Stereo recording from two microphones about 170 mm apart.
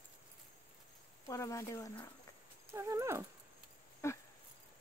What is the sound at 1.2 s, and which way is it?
Speech, 20° left (ahead or behind).